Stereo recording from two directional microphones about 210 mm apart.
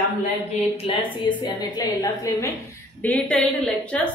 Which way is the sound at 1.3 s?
20° left (ahead or behind).